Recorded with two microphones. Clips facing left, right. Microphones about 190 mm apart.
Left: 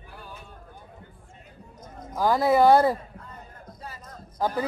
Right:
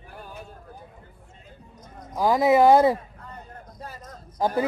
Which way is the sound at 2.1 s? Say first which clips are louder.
Right 1 dB; centre (ahead or behind).